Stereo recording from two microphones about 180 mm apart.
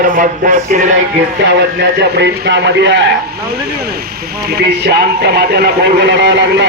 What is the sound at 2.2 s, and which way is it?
Speech, 75° right (ahead or behind).